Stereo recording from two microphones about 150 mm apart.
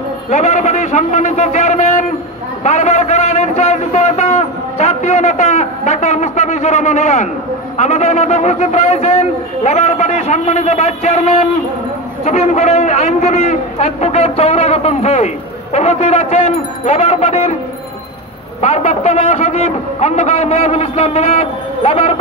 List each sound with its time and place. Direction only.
0.3 s a man's voice: 50° left (ahead or behind)
2.6 s a sound: 45° left (ahead or behind)
7.7 s a man's voice: 45° left (ahead or behind)
18.6 s a man's voice: 40° left (ahead or behind)